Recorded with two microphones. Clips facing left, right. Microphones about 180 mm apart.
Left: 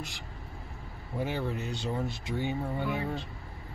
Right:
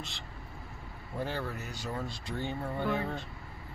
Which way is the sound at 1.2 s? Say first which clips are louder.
Left 4 dB; 20° left (ahead or behind).